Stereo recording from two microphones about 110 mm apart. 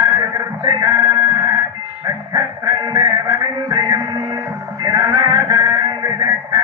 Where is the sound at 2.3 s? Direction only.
35° right (ahead or behind).